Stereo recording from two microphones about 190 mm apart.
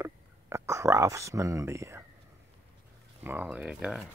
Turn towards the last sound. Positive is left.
turn(degrees=-5)  # may be behind; listen again after turning